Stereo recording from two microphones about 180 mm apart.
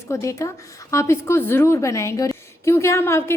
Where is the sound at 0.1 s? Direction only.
15° left (ahead or behind).